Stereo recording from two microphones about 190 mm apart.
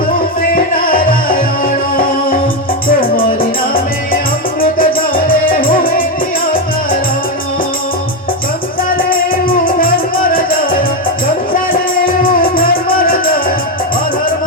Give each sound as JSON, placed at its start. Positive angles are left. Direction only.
{"t": 0.5, "sound": "music", "side_deg": 50}
{"t": 4.6, "sound": "music", "side_deg": 50}
{"t": 9.0, "sound": "music", "side_deg": 50}